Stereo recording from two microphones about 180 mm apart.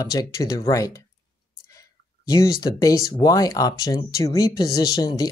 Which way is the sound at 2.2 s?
20° left (ahead or behind).